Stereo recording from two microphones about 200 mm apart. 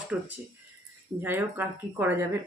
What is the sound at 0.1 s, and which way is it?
Speech, 5° right (ahead or behind).